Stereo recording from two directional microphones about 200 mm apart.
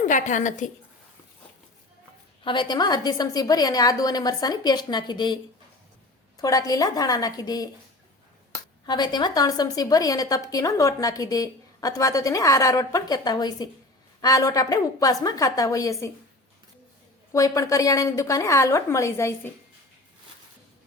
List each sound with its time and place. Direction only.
0.0 s a woman's voice: 40° left (ahead or behind)
2.4 s a woman's voice: 25° left (ahead or behind)
8.9 s a woman's voice: 20° left (ahead or behind)
17.3 s a woman's voice: 15° left (ahead or behind)